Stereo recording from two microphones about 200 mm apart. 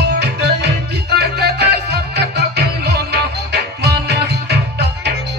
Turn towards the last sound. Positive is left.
turn(degrees=-55)  # may be behind; listen again after turning